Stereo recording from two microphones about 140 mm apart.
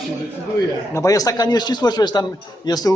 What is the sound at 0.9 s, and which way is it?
A man's voice, 25° left (ahead or behind).